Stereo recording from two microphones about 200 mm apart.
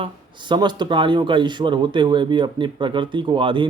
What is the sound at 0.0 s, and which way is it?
Speech, 25° right (ahead or behind).